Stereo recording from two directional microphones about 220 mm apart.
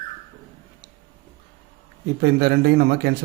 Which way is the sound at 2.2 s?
45° right (ahead or behind).